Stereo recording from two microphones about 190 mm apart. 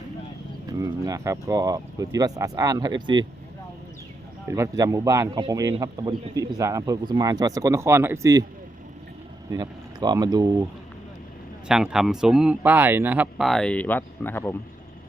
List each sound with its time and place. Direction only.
0.8 s speech: 15° right (ahead or behind)
4.4 s speech: 15° right (ahead or behind)
9.5 s speech: 20° right (ahead or behind)
11.7 s speech: 5° right (ahead or behind)
13.5 s speech: 5° left (ahead or behind)